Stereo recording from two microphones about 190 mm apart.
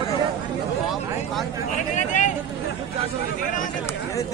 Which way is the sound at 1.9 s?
40° left (ahead or behind).